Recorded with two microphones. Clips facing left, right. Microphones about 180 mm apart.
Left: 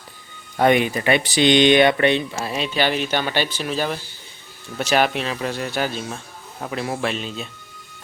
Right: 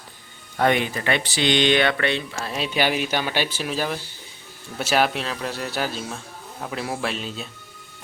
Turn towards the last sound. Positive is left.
turn(degrees=0)  # may be behind; listen again after turning